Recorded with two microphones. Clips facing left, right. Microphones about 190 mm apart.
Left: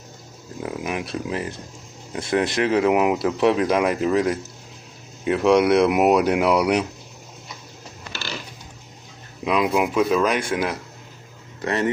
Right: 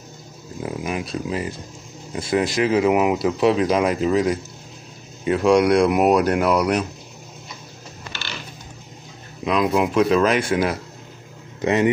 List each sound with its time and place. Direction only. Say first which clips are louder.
0.6 s speech: right 1 dB; centre (ahead or behind)
5.5 s speech: even; 5° left (ahead or behind)
8.1 s a sound: left 3 dB; 40° left (ahead or behind)
9.4 s speech: right 1 dB; 5° left (ahead or behind)
11.6 s speech: right 5 dB; 15° right (ahead or behind)